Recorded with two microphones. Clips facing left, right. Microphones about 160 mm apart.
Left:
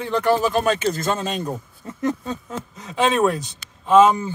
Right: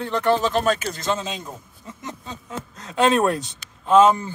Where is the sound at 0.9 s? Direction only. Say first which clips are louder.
Left 2 dB; 55° left (ahead or behind).